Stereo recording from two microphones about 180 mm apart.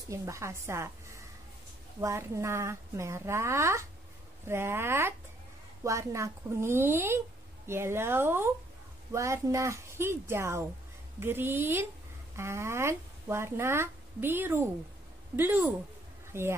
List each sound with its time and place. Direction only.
0.1 s speech: 15° right (ahead or behind)
2.0 s speech: 15° right (ahead or behind)